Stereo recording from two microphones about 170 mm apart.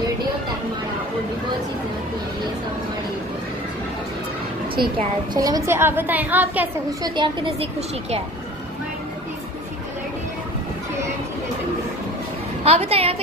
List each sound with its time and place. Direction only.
4.9 s a woman's voice: 25° right (ahead or behind)
7.2 s a woman's voice: 25° right (ahead or behind)
12.6 s a woman's voice: 35° right (ahead or behind)